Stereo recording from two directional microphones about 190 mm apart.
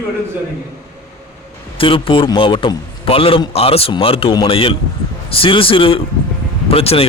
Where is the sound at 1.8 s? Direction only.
30° left (ahead or behind).